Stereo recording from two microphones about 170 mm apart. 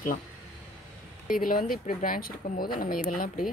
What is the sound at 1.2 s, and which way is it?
Speech, 55° left (ahead or behind).